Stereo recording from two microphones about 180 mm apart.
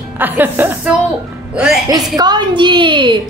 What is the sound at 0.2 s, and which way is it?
Speech, 10° right (ahead or behind).